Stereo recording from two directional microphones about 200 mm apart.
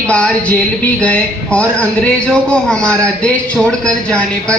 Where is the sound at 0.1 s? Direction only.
5° left (ahead or behind).